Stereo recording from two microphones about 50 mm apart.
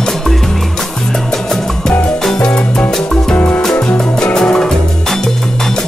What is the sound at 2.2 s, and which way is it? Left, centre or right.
Music, centre.